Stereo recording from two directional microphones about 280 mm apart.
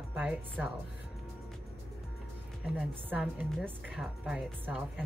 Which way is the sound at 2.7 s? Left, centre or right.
Centre.